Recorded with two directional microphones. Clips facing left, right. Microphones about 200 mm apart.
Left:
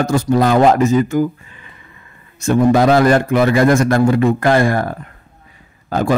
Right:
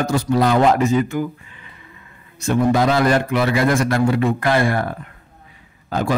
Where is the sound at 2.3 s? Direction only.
45° left (ahead or behind).